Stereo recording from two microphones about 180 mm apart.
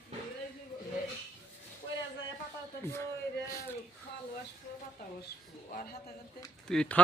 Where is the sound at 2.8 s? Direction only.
15° left (ahead or behind).